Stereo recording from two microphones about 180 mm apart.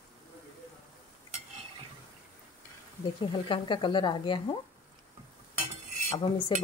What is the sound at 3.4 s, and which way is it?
Speech, 25° left (ahead or behind).